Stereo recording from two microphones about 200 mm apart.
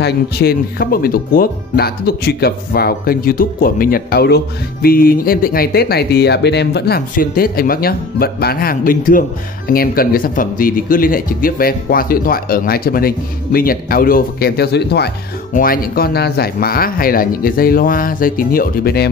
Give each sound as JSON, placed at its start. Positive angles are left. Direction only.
{"t": 0.0, "sound": "speech", "side_deg": 50}